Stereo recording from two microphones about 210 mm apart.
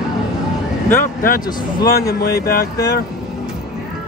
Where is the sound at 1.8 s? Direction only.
50° left (ahead or behind).